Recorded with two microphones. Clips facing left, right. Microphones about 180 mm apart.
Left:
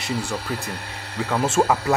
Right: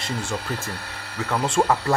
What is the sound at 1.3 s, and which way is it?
Speech, 10° left (ahead or behind).